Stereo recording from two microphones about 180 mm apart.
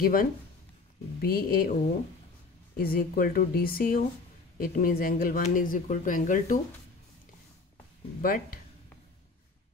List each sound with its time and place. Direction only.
0.0 s speech: 50° left (ahead or behind)
2.8 s speech: 55° left (ahead or behind)
8.2 s speech: 50° left (ahead or behind)